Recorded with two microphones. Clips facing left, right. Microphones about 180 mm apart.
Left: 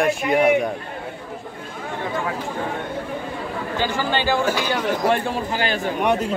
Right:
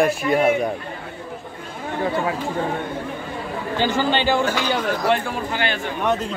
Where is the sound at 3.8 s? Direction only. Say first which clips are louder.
Right 3 dB; 20° right (ahead or behind).